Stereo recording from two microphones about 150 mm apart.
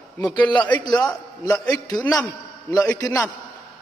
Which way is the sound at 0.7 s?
25° left (ahead or behind).